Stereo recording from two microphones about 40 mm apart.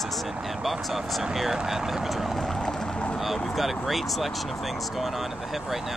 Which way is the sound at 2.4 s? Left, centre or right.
Centre.